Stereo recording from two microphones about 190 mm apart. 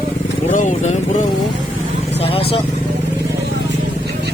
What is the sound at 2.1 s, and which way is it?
Speech, 30° left (ahead or behind).